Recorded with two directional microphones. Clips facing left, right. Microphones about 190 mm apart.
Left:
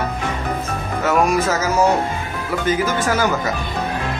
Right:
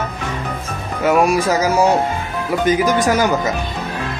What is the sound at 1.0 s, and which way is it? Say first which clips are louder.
Music: right 3 dB; 15° right (ahead or behind).